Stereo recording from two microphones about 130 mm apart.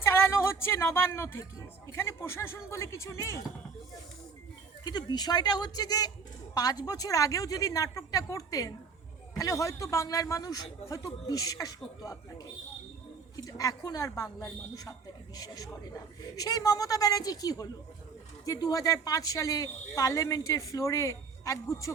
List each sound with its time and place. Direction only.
0.0 s speech: 20° left (ahead or behind)
4.8 s speech: 35° left (ahead or behind)
13.3 s speech: 25° left (ahead or behind)